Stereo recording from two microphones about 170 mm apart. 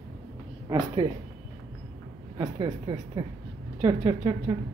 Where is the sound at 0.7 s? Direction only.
25° right (ahead or behind).